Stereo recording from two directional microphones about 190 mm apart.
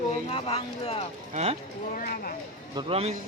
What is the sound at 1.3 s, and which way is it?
Speech, 35° right (ahead or behind).